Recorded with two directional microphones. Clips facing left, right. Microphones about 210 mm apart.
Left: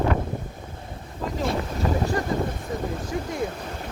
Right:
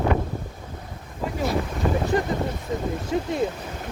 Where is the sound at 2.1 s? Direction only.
20° right (ahead or behind).